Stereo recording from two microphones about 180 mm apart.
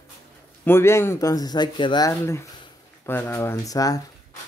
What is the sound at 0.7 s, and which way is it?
Speech, 15° left (ahead or behind).